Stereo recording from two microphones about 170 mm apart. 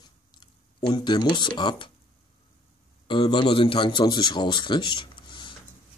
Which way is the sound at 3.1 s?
30° left (ahead or behind).